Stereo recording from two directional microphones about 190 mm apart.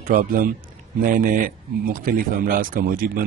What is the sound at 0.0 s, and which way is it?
A man's voice, 45° right (ahead or behind).